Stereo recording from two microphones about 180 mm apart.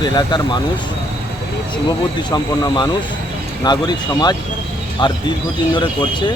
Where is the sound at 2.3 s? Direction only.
25° left (ahead or behind).